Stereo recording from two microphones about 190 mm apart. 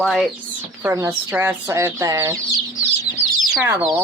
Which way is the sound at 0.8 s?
15° right (ahead or behind).